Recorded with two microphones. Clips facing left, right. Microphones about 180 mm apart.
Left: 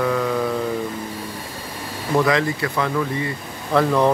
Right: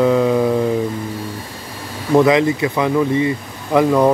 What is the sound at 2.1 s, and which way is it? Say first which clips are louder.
Speech: right 6 dB; 20° right (ahead or behind).